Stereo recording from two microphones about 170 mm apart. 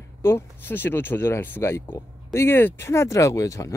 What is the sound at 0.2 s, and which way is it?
Speech, 15° left (ahead or behind).